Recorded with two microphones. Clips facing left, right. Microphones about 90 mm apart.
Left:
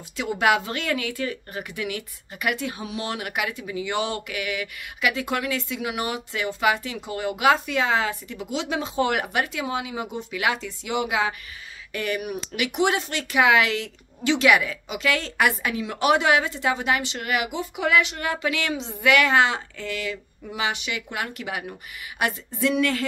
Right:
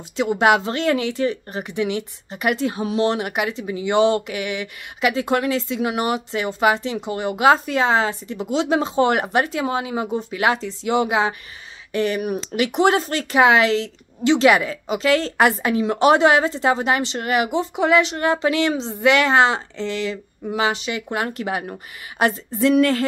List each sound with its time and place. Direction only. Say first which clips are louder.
0.1 s speech: right 5 dB; 30° right (ahead or behind)